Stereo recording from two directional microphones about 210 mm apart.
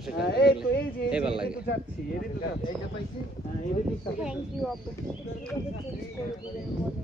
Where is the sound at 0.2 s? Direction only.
50° left (ahead or behind).